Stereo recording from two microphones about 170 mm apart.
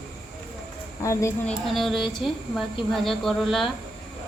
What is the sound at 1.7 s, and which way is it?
A woman's voice, centre (ahead or behind).